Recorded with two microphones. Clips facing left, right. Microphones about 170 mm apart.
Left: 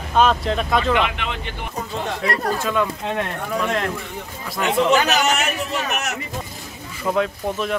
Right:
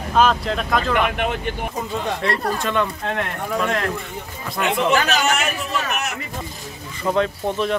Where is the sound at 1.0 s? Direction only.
50° right (ahead or behind).